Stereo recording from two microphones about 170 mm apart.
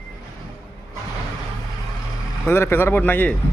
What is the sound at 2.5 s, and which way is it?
Speech, 15° left (ahead or behind).